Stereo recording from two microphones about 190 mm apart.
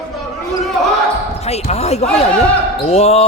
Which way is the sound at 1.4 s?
35° left (ahead or behind).